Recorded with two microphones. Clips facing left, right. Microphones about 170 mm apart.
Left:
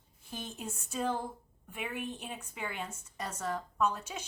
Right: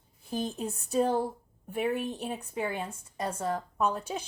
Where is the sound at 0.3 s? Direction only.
35° right (ahead or behind).